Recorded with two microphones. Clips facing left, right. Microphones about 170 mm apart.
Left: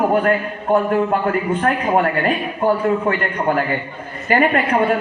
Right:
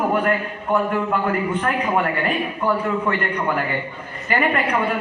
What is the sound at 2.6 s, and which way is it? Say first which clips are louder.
A man's voice: left 6 dB; 45° left (ahead or behind).